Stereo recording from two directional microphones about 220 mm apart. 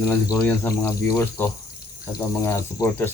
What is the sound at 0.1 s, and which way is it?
Speech, 10° left (ahead or behind).